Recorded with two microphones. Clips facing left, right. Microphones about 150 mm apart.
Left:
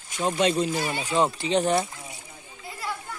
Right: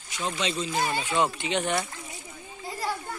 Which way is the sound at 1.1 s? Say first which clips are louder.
Left 5 dB; 35° left (ahead or behind).